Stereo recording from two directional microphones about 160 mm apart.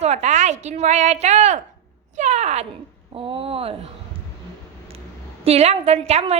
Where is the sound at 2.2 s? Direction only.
45° right (ahead or behind).